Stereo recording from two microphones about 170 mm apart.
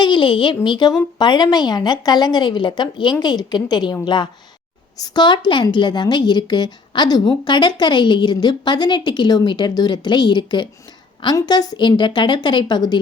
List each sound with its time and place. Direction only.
0.0 s a woman's voice: 30° left (ahead or behind)